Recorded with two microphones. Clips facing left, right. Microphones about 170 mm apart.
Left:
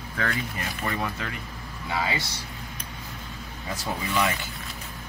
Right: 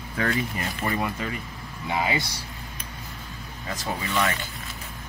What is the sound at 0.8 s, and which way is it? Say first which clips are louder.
Speech: right 3 dB; 10° right (ahead or behind).